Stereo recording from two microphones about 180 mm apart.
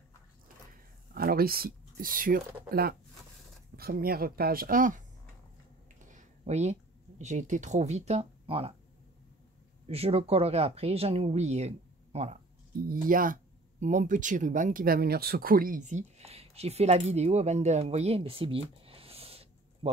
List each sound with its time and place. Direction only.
1.1 s speech: 55° right (ahead or behind)
6.0 s speech: 40° right (ahead or behind)
9.8 s speech: 35° right (ahead or behind)
12.9 s speech: 50° right (ahead or behind); by 19.9 s 35° right (ahead or behind)